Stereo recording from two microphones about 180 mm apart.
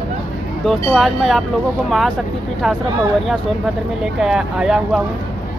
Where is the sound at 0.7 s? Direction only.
Centre (ahead or behind).